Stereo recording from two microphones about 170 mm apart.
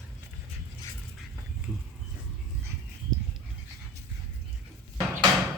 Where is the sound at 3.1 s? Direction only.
Centre (ahead or behind).